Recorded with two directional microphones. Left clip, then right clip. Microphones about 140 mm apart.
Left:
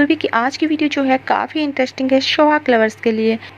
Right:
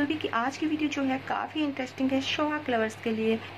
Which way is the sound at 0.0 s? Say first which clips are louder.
Left 13 dB; 40° left (ahead or behind).